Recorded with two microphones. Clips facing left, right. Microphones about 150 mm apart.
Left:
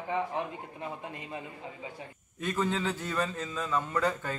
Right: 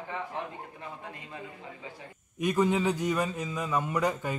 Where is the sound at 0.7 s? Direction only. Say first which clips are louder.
Left 3 dB; 20° left (ahead or behind).